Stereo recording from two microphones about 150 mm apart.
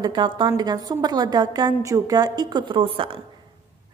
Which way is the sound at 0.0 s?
30° right (ahead or behind).